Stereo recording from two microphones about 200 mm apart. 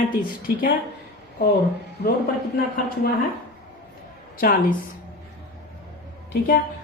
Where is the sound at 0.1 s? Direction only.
45° left (ahead or behind).